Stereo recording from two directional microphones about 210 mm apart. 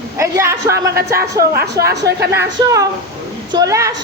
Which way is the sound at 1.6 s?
50° right (ahead or behind).